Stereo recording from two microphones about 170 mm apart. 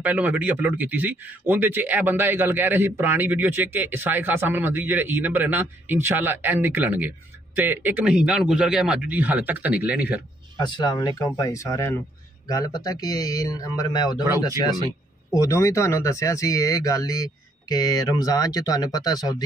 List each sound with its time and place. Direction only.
0.0 s speech: 10° right (ahead or behind)
10.6 s speech: 25° left (ahead or behind)
15.3 s speech: 20° left (ahead or behind)